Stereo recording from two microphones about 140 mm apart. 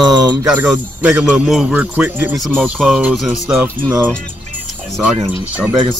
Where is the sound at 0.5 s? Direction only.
10° right (ahead or behind).